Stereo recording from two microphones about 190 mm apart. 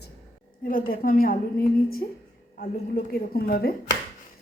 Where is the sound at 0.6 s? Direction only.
50° left (ahead or behind).